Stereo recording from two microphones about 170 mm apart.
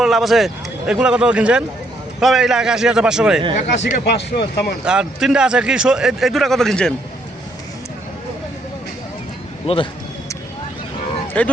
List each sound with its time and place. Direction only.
0.0 s a man's voice: centre (ahead or behind)
4.0 s speech: 75° left (ahead or behind)
4.9 s a man's voice: 5° right (ahead or behind)
9.6 s speech: 30° left (ahead or behind)
11.3 s speech: 10° left (ahead or behind)